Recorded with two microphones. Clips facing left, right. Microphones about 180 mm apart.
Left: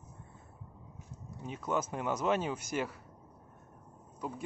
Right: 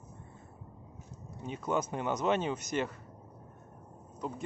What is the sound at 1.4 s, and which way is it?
Speech, centre (ahead or behind).